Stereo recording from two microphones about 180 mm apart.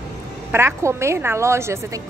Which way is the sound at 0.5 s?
15° right (ahead or behind).